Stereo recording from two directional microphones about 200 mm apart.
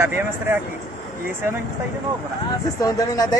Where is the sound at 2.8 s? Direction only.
15° left (ahead or behind).